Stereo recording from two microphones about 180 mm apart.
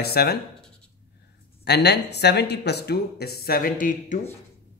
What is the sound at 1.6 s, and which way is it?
Speech, 65° left (ahead or behind).